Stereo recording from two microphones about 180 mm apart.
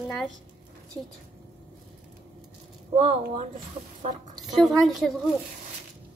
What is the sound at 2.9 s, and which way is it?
Speech, 30° right (ahead or behind).